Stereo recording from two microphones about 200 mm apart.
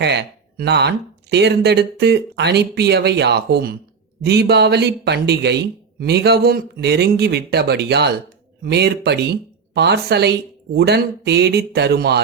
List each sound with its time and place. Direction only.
0.0 s speech: 55° right (ahead or behind)